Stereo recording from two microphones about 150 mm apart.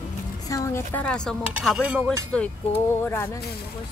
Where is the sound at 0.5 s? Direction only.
20° left (ahead or behind).